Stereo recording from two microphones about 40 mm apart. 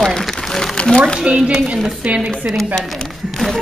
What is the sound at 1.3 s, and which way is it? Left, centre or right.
A woman's voice, right.